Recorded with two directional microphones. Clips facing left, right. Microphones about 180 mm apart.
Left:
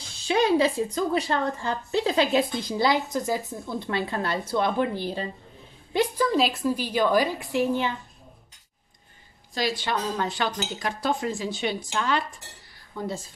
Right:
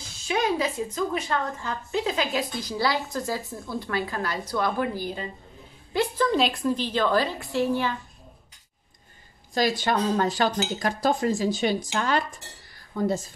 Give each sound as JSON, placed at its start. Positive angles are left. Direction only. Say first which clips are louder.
{"t": 0.2, "sound": "a woman's voice", "louder": "left 4 dB", "side_deg": 30}
{"t": 5.9, "sound": "a woman's voice", "louder": "even", "side_deg": 10}
{"t": 9.5, "sound": "speech", "louder": "right 3 dB", "side_deg": -45}